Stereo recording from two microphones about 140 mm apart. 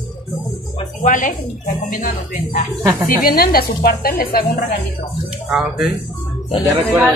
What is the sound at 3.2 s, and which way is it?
Speech, 90° left.